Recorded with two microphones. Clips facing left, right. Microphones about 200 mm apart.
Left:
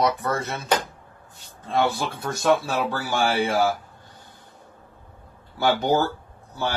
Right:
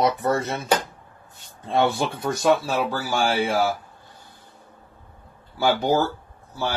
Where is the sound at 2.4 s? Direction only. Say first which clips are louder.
Even; 10° right (ahead or behind).